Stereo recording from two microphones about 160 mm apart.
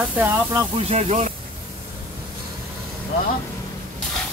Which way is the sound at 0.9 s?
45° right (ahead or behind).